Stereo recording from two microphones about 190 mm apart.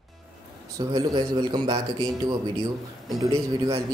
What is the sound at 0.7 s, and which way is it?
A man's voice, 20° right (ahead or behind).